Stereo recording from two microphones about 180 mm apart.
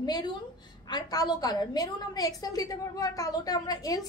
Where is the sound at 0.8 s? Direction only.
20° left (ahead or behind).